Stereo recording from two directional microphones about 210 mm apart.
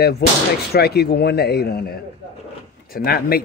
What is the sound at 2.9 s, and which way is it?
Speech, 45° left (ahead or behind).